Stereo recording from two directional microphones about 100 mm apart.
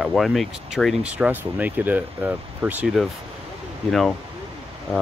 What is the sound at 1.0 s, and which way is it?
Speech, 10° right (ahead or behind).